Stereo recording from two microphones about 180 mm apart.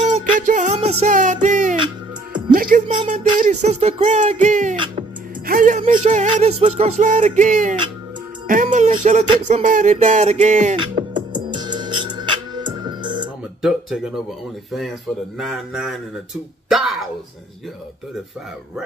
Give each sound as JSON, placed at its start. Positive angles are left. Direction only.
{"t": 0.1, "sound": "music", "side_deg": -45}
{"t": 3.1, "sound": "speech", "side_deg": -40}
{"t": 9.5, "sound": "music", "side_deg": -45}
{"t": 10.8, "sound": "music", "side_deg": -25}
{"t": 13.6, "sound": "a sound", "side_deg": 0}
{"t": 14.7, "sound": "speech", "side_deg": 0}
{"t": 16.6, "sound": "a sound", "side_deg": 0}